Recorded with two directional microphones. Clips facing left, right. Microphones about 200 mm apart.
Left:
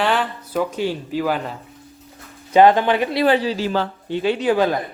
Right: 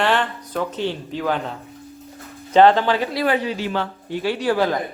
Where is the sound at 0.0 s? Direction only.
5° left (ahead or behind); by 4.2 s 35° left (ahead or behind).